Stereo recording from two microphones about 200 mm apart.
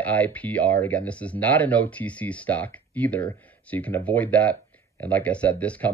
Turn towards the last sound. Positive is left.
turn(degrees=5)  # may be behind; listen again after turning